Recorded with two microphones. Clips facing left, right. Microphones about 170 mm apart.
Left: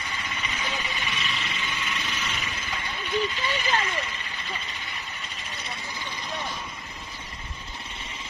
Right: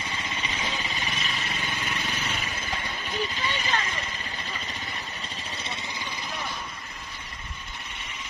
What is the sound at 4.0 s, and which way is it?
Vehicle, 35° right (ahead or behind).